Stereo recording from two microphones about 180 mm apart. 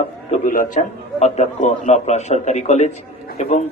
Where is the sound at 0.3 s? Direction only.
50° left (ahead or behind).